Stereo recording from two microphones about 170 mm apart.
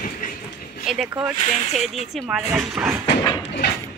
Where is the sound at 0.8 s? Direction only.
5° right (ahead or behind).